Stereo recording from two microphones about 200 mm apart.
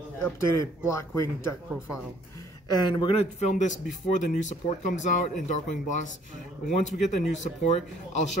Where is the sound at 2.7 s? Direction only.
20° left (ahead or behind).